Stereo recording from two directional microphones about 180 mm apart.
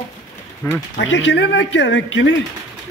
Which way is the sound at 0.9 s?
85° left.